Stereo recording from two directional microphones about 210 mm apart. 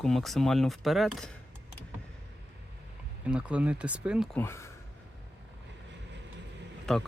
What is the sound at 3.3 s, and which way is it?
Speech, 5° right (ahead or behind).